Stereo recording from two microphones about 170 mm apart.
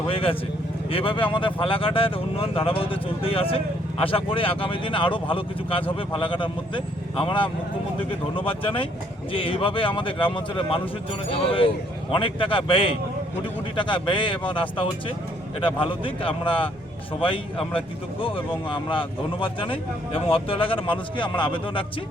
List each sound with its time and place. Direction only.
0.1 s a man's voice: 30° left (ahead or behind)